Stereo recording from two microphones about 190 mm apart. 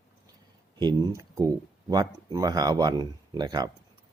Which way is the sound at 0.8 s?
20° right (ahead or behind).